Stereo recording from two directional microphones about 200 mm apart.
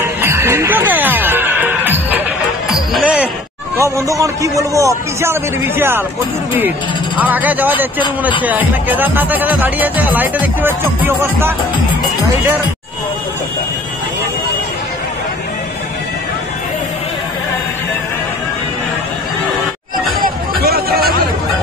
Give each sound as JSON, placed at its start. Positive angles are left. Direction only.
{"t": 0.0, "sound": "music", "side_deg": -10}
{"t": 3.8, "sound": "speech", "side_deg": -15}
{"t": 7.2, "sound": "speech", "side_deg": -10}
{"t": 20.6, "sound": "a sound", "side_deg": -50}